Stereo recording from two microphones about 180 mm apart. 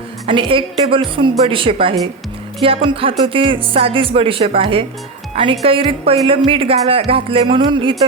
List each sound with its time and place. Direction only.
0.3 s a woman's voice: 30° right (ahead or behind)